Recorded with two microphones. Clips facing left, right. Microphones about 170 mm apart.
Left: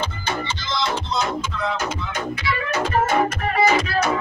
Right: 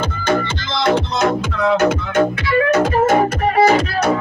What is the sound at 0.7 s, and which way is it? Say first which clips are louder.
Music: right 8 dB; 65° right (ahead or behind).